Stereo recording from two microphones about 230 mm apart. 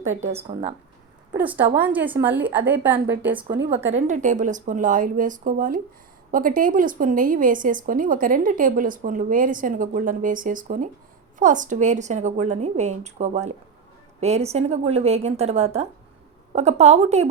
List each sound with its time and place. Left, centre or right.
0.0 s a woman's voice: right
1.4 s a woman's voice: centre
3.7 s a woman's voice: right